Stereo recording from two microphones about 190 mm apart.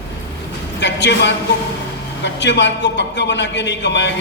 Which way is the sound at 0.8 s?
65° left (ahead or behind).